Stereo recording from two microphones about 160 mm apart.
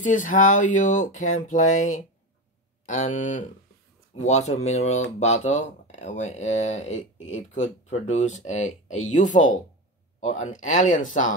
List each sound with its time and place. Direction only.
0.0 s speech: 55° left (ahead or behind)